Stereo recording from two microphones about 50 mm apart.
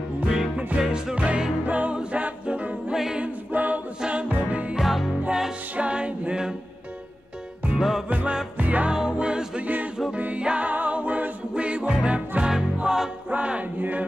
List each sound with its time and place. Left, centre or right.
0.7 s music: centre
1.1 s music: right
2.1 s a capella: right
2.9 s a capella: centre
3.2 s a capella: right
4.0 s music: right
4.7 s music: centre
5.8 s music: right
7.7 s music: centre
8.1 s music: right
8.9 s music: centre
9.6 s music: right; by 13.1 s centre
13.3 s music: right